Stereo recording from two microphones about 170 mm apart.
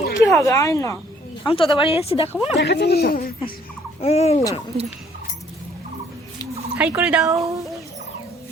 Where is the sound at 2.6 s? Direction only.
75° left (ahead or behind).